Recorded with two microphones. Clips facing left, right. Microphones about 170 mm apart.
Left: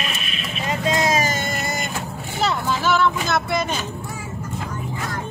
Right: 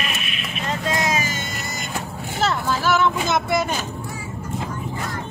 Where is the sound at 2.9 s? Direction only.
15° right (ahead or behind).